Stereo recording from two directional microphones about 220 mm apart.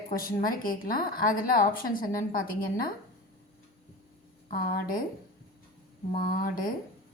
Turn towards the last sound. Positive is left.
turn(degrees=40)  # may be behind; listen again after turning